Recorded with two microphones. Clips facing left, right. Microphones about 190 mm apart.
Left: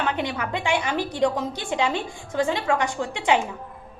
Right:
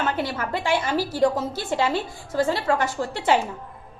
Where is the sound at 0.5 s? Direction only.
15° left (ahead or behind).